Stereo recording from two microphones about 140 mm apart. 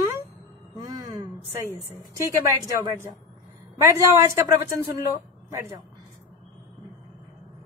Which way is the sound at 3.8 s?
20° right (ahead or behind).